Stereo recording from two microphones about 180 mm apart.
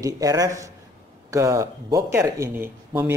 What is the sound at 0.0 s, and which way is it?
Speech, 20° right (ahead or behind).